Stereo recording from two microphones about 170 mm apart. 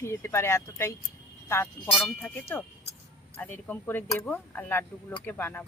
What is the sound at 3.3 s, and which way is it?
Speech, 10° left (ahead or behind).